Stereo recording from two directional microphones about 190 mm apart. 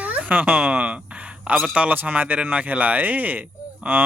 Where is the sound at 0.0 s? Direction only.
5° right (ahead or behind).